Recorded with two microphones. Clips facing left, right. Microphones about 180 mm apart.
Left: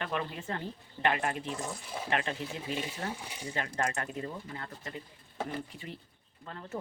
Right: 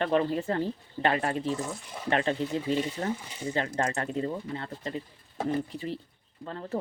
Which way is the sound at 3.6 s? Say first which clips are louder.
Right 4 dB; 30° right (ahead or behind).